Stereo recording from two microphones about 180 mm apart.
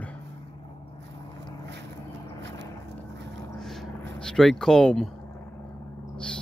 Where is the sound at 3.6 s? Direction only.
Centre (ahead or behind).